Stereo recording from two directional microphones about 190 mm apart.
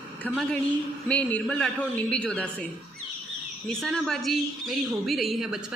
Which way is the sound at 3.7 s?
Centre (ahead or behind).